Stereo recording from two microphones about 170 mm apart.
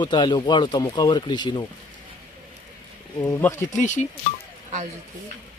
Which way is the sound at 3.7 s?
45° left (ahead or behind).